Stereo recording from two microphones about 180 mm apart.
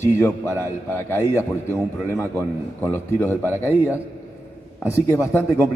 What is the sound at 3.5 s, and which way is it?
Speech, 15° right (ahead or behind).